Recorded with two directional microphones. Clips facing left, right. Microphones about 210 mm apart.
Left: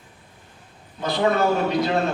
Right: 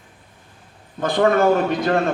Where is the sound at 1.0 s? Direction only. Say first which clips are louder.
Right 4 dB; 50° right (ahead or behind).